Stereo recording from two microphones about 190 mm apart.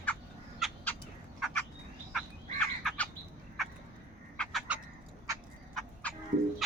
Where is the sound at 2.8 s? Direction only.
5° left (ahead or behind).